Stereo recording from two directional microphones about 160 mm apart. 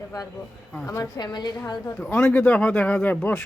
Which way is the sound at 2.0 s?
5° left (ahead or behind).